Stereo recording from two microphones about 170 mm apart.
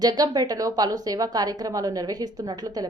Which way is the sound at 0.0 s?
20° right (ahead or behind).